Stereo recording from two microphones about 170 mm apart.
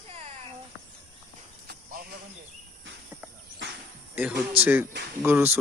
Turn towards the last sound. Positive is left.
turn(degrees=-10)  # may be behind; listen again after turning